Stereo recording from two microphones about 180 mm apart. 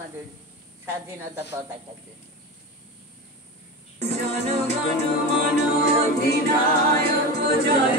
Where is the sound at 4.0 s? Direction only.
40° right (ahead or behind).